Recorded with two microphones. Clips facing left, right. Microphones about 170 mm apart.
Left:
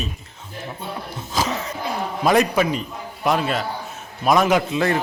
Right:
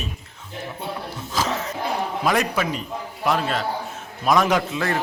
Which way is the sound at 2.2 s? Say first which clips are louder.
Left 6 dB; 20° left (ahead or behind).